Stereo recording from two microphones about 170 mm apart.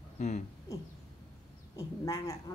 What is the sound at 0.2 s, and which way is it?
Speech, 45° left (ahead or behind).